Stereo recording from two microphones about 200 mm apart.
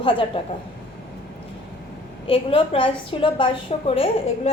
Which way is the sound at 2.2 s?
25° left (ahead or behind).